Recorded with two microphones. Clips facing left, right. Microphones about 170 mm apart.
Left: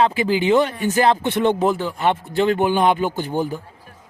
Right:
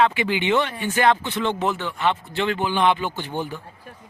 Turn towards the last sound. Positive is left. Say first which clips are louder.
# left 3 dB
turn(degrees=45)  # may be behind; listen again after turning